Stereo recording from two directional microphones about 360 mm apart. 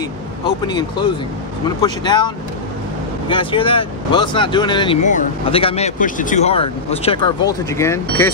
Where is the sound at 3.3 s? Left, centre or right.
Centre.